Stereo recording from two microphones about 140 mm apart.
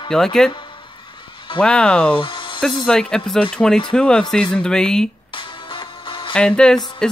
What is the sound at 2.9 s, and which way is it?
Speech, 5° left (ahead or behind).